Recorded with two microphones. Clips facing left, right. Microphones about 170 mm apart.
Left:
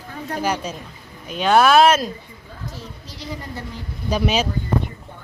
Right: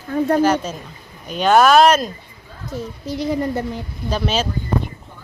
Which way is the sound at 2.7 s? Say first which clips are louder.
Right 11 dB; 55° right (ahead or behind).